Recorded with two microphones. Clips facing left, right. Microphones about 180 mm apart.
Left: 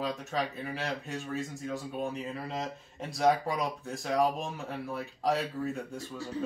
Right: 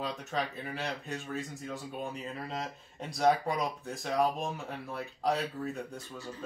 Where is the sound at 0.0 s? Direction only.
Centre (ahead or behind).